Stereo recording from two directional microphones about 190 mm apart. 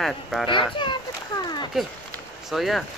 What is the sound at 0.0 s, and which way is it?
Speech, centre (ahead or behind).